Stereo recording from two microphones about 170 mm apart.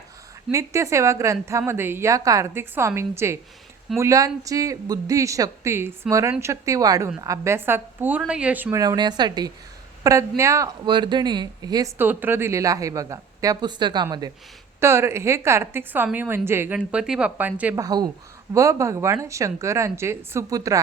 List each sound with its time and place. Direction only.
0.5 s a woman's voice: 15° right (ahead or behind)
8.8 s a woman's voice: 25° right (ahead or behind)
10.8 s a woman's voice: 30° right (ahead or behind); by 17.8 s 10° right (ahead or behind)
17.8 s a woman's voice: 25° right (ahead or behind)